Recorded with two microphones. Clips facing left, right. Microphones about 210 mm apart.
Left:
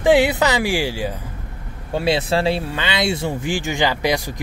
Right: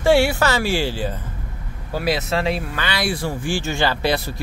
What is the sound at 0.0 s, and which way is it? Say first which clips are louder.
Speech: left 1 dB; 20° left (ahead or behind).